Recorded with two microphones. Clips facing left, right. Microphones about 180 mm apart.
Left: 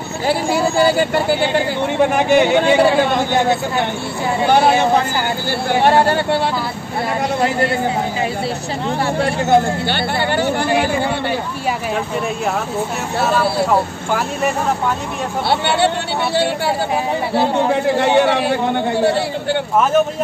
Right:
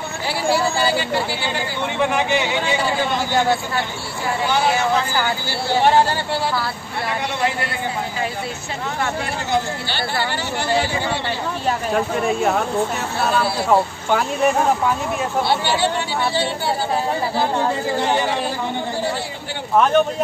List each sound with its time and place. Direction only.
0.3 s speech: 50° left (ahead or behind)
4.5 s speech: 55° left (ahead or behind)
5.9 s speech: 60° left (ahead or behind)
9.2 s speech: 55° left (ahead or behind)
13.2 s speech: centre (ahead or behind)
15.6 s speech: 65° left (ahead or behind)
17.7 s a man's voice: 65° left (ahead or behind)